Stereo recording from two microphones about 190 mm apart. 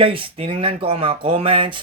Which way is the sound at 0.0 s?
30° right (ahead or behind).